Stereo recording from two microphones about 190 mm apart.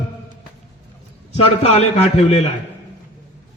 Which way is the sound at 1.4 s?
35° left (ahead or behind).